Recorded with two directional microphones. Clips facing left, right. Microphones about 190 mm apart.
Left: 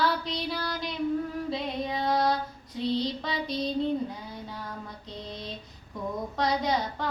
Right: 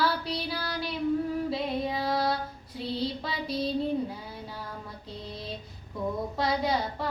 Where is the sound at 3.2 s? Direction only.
5° right (ahead or behind).